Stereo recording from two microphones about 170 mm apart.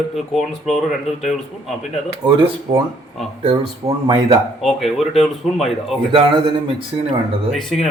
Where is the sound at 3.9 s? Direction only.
30° right (ahead or behind).